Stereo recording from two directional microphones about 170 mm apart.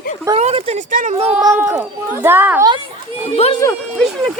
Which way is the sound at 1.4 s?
20° right (ahead or behind).